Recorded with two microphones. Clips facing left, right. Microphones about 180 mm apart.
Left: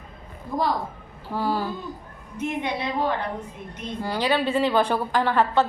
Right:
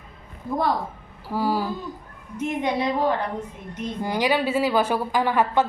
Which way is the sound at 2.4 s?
40° right (ahead or behind).